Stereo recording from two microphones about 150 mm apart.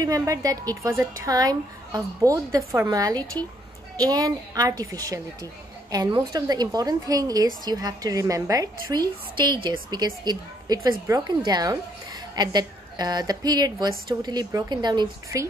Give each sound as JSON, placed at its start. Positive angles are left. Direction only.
{"t": 0.0, "sound": "a woman's voice", "side_deg": -25}